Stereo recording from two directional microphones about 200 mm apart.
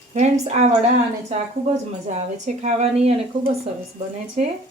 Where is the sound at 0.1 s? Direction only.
35° right (ahead or behind).